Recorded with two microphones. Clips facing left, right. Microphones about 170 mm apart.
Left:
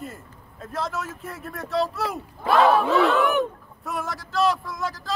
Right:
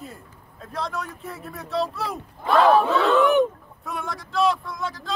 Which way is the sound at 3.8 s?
Centre (ahead or behind).